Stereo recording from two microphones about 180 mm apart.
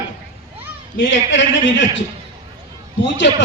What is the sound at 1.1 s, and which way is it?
Speech, 90° left.